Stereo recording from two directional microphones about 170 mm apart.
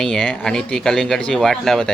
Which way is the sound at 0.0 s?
Centre (ahead or behind).